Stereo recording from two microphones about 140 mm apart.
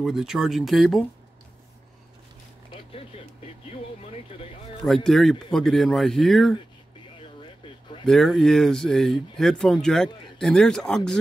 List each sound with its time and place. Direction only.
0.0 s speech: 5° right (ahead or behind)
2.7 s a sound: 40° left (ahead or behind)
4.8 s speech: centre (ahead or behind)
8.0 s speech: centre (ahead or behind)